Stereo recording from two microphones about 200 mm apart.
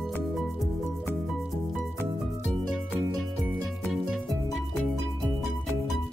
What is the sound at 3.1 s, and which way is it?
Music, centre (ahead or behind).